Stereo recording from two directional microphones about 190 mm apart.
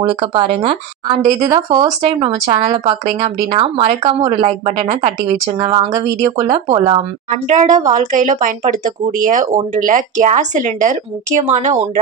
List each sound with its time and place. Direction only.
0.2 s speech: 30° right (ahead or behind)
5.6 s speech: 20° right (ahead or behind)
7.0 s speech: 40° right (ahead or behind)